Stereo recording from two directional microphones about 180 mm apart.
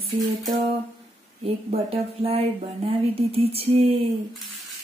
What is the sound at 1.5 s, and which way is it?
Speech, 35° right (ahead or behind).